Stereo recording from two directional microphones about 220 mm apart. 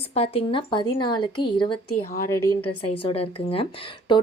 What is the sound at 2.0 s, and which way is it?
Speech, 40° left (ahead or behind).